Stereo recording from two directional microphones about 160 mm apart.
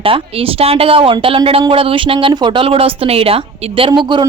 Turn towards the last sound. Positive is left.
turn(degrees=-30)  # may be behind; listen again after turning